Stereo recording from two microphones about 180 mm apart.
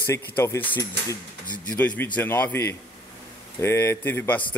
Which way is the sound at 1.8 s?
10° left (ahead or behind).